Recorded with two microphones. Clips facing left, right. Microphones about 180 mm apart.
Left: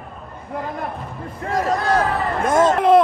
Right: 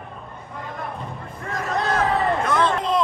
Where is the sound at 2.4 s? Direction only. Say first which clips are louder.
Left 6 dB; 45° left (ahead or behind).